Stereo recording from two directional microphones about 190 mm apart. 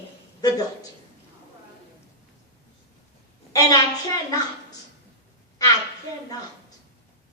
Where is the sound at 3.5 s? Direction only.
20° left (ahead or behind).